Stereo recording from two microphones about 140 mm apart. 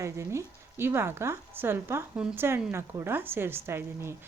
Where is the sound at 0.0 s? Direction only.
20° right (ahead or behind).